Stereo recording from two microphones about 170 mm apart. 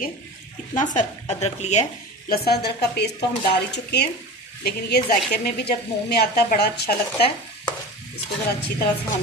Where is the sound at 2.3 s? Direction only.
70° left (ahead or behind).